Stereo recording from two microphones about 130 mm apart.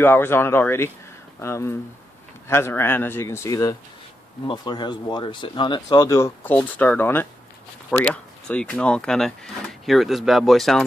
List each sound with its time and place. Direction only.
0.0 s speech: 15° left (ahead or behind)